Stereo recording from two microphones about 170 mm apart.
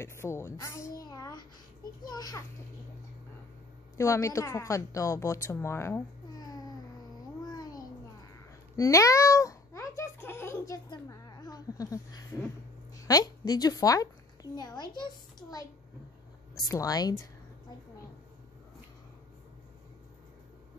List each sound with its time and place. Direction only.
0.0 s a child's voice: 15° left (ahead or behind)
4.0 s a woman's voice: 15° left (ahead or behind)
8.7 s a child's voice: 20° left (ahead or behind)
16.6 s speech: 20° left (ahead or behind)